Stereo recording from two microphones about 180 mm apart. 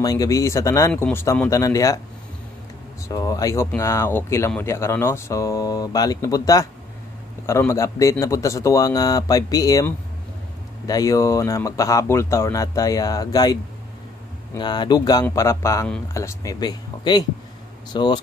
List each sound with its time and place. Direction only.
0.0 s speech: 20° left (ahead or behind)
3.1 s speech: 20° left (ahead or behind)